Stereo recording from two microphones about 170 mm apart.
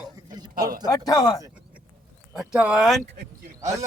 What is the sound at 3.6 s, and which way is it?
Speech, 20° right (ahead or behind).